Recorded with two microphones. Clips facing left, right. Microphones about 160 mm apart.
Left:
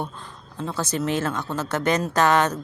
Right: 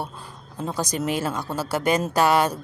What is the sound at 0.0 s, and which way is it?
Speech, 10° right (ahead or behind).